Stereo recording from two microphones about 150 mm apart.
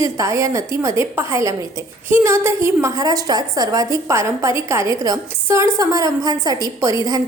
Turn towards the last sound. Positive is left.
turn(degrees=-25)  # may be behind; listen again after turning